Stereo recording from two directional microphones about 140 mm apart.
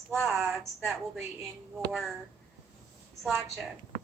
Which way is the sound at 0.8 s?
15° right (ahead or behind).